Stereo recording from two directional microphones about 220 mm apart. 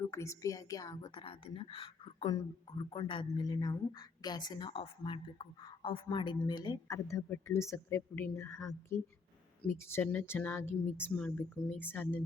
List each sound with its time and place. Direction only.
0.0 s a woman's voice: 15° left (ahead or behind)
9.6 s a woman's voice: 10° left (ahead or behind)